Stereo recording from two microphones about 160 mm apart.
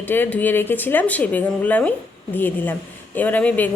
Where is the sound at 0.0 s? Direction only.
10° left (ahead or behind).